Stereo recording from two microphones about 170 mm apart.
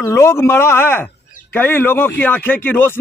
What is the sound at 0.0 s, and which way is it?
Speech, 15° left (ahead or behind).